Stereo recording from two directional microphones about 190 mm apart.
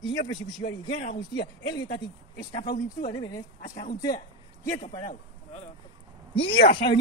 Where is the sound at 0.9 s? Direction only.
45° left (ahead or behind).